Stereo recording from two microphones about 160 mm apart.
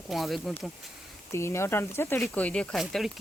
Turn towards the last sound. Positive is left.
turn(degrees=0)  # may be behind; listen again after turning